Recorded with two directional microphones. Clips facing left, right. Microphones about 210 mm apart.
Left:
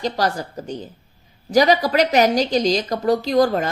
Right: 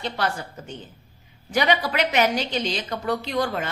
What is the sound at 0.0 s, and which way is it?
A woman's voice, 40° left (ahead or behind).